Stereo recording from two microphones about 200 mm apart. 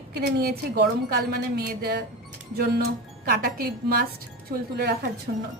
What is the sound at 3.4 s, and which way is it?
A woman's voice, 50° right (ahead or behind).